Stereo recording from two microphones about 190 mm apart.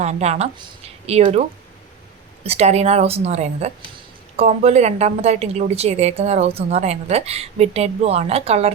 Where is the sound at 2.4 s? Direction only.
35° right (ahead or behind).